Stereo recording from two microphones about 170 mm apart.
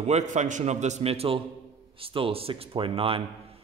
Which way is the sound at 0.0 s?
45° right (ahead or behind).